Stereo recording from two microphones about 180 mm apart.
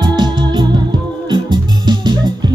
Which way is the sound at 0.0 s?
25° right (ahead or behind).